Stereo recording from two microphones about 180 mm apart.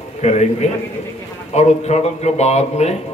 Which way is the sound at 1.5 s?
40° left (ahead or behind).